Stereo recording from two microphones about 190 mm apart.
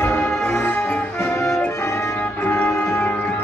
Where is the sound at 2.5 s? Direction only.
10° left (ahead or behind).